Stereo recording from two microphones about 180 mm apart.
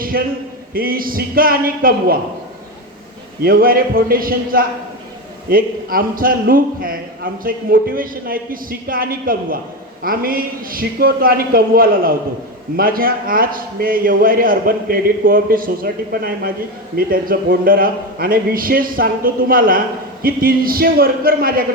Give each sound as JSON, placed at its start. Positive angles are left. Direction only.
{"t": 0.7, "sound": "a man's voice", "side_deg": -55}
{"t": 3.4, "sound": "a man's voice", "side_deg": -55}